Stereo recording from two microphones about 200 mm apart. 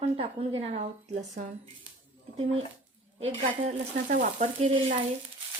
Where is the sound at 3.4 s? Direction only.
35° right (ahead or behind).